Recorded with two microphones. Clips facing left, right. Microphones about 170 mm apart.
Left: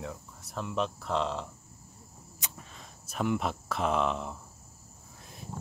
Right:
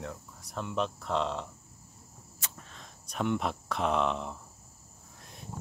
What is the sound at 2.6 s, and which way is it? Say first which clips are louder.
Speech: left 1 dB; 5° left (ahead or behind).